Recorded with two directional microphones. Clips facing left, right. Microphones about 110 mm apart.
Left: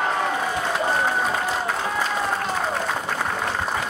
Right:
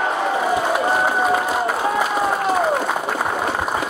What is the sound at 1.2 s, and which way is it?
Applause, 10° right (ahead or behind).